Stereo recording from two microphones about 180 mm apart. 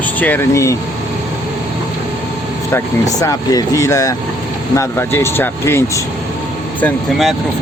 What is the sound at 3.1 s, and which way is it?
Speech, 20° left (ahead or behind).